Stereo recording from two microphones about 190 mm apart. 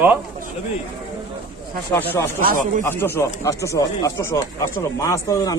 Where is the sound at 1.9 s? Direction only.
10° left (ahead or behind).